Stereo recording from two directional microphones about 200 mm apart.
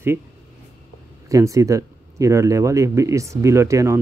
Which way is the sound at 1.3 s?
15° right (ahead or behind).